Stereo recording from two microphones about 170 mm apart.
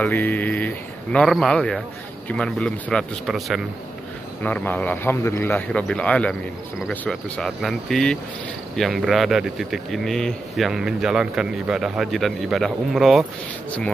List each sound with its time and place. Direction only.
0.0 s a man's voice: 10° left (ahead or behind)